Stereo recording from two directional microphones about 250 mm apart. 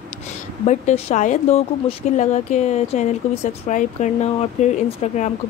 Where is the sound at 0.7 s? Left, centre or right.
Left.